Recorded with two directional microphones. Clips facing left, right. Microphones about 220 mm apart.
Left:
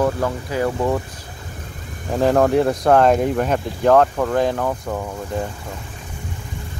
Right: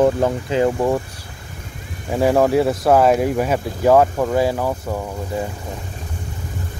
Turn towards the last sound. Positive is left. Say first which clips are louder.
# right 1 dB
turn(degrees=-10)  # may be behind; listen again after turning